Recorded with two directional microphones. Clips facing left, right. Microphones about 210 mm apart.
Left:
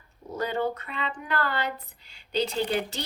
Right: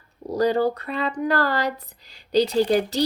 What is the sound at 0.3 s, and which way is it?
Speech, 35° right (ahead or behind).